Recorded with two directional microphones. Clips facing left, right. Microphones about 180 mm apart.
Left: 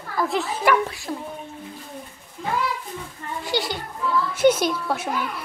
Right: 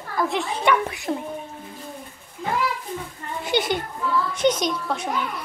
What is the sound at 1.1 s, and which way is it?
Speech, 30° right (ahead or behind).